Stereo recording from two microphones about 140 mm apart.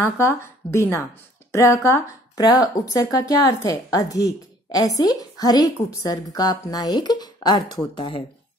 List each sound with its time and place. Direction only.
0.0 s a woman's voice: 20° left (ahead or behind); by 8.2 s 35° left (ahead or behind)